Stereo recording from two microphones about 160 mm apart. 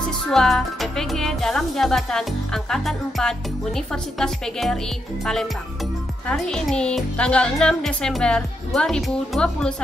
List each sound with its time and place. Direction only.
0.3 s speech: centre (ahead or behind)